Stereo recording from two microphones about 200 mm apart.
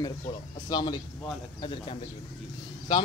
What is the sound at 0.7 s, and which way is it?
Speech, 20° left (ahead or behind).